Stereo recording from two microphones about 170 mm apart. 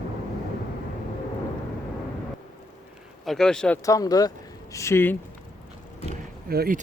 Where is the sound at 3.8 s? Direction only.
20° left (ahead or behind).